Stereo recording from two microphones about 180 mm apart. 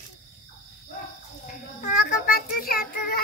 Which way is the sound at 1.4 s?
45° left (ahead or behind).